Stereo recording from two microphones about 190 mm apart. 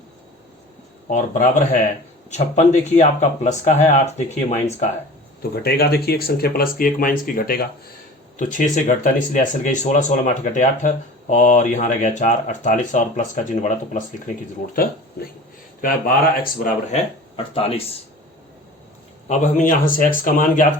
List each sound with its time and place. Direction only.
1.1 s speech: 40° left (ahead or behind)
5.4 s speech: 55° left (ahead or behind)
16.9 s speech: 30° left (ahead or behind)
19.3 s speech: 40° left (ahead or behind)